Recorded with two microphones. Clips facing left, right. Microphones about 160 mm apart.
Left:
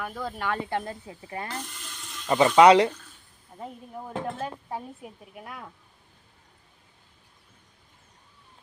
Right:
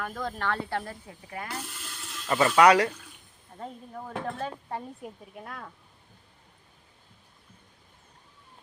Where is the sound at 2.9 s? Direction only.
10° right (ahead or behind).